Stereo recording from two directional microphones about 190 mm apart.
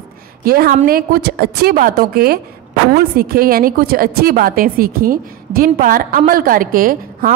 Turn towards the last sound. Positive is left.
turn(degrees=-50)  # may be behind; listen again after turning